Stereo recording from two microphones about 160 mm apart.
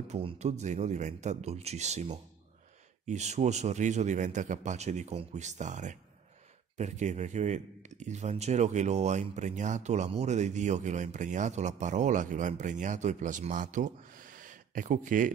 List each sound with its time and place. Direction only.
0.1 s speech: 40° right (ahead or behind); by 15.3 s 55° right (ahead or behind)